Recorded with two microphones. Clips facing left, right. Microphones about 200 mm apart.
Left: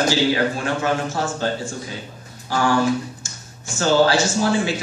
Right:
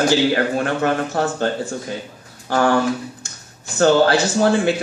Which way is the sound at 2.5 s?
55° right (ahead or behind).